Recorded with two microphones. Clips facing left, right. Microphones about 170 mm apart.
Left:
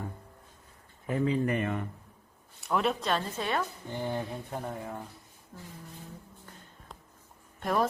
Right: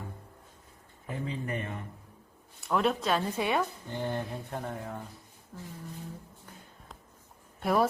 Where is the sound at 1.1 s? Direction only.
85° left.